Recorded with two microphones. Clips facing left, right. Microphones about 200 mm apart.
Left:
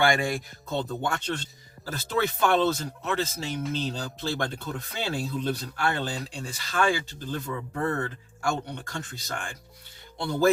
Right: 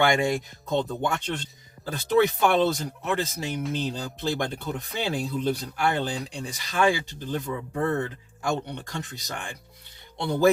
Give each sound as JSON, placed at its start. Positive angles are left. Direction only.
{"t": 0.0, "sound": "speech", "side_deg": -20}